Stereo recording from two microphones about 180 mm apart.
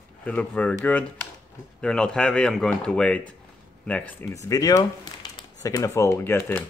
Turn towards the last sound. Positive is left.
turn(degrees=10)  # may be behind; listen again after turning